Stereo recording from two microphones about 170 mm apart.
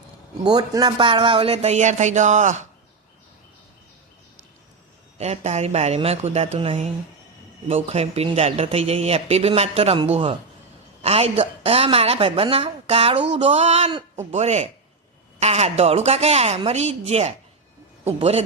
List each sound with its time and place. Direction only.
0.4 s speech: 25° right (ahead or behind); by 2.6 s 45° right (ahead or behind)
5.1 s speech: 40° right (ahead or behind)